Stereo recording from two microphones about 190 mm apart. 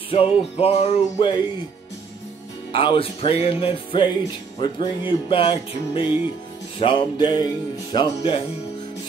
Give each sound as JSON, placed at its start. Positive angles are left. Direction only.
{"t": 0.1, "sound": "music", "side_deg": 30}
{"t": 2.7, "sound": "music", "side_deg": 25}